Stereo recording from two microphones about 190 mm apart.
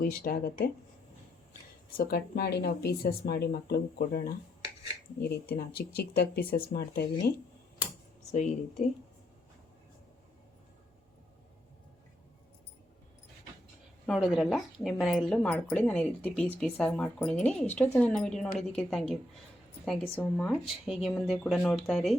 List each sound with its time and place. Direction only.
0.0 s speech: 50° left (ahead or behind)
2.0 s speech: 55° left (ahead or behind)
5.2 s speech: 50° left (ahead or behind)
8.3 s speech: 40° left (ahead or behind)
14.1 s a woman's voice: centre (ahead or behind)